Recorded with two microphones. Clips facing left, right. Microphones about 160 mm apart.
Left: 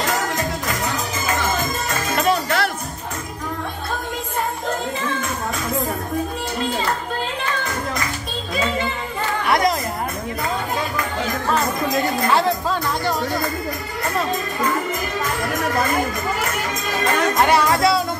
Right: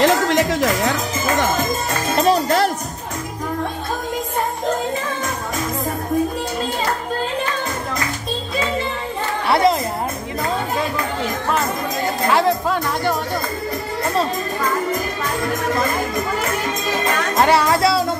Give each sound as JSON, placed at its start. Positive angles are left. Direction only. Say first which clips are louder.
{"t": 0.0, "sound": "music", "louder": "right 7 dB", "side_deg": -90}
{"t": 2.1, "sound": "music", "louder": "right 4 dB", "side_deg": -35}
{"t": 9.5, "sound": "a sound", "louder": "right 3 dB", "side_deg": -30}
{"t": 12.4, "sound": "music", "louder": "right 2 dB", "side_deg": -15}
{"t": 17.3, "sound": "music", "louder": "right 3 dB", "side_deg": -25}